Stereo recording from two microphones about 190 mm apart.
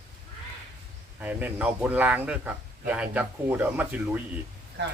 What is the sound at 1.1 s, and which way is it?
A man's voice, 10° right (ahead or behind).